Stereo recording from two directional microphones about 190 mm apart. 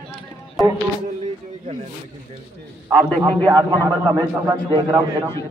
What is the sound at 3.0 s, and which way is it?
Speech, 10° left (ahead or behind).